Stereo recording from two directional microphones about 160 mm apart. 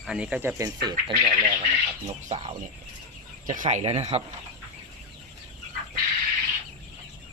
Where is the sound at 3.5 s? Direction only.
50° right (ahead or behind).